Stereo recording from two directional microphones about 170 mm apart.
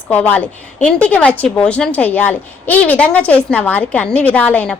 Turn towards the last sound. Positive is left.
turn(degrees=10)  # may be behind; listen again after turning